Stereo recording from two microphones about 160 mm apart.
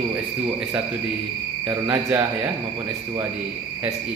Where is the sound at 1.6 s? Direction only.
10° right (ahead or behind).